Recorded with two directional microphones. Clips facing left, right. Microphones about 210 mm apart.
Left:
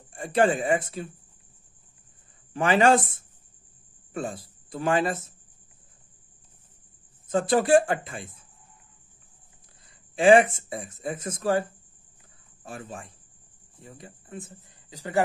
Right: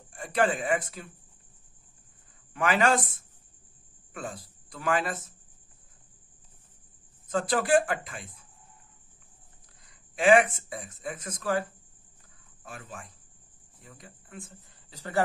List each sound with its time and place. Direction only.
0.1 s speech: 25° left (ahead or behind)
2.5 s speech: 25° left (ahead or behind)
7.2 s speech: 25° left (ahead or behind)
10.1 s speech: 30° left (ahead or behind)
12.6 s speech: 30° left (ahead or behind)